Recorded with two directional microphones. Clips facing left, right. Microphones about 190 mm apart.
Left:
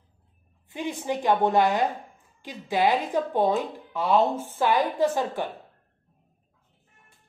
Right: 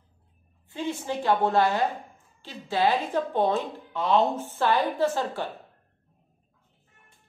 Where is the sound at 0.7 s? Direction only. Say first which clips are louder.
Left 1 dB; 15° left (ahead or behind).